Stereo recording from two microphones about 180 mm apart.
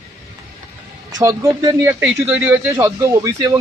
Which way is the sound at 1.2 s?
20° right (ahead or behind).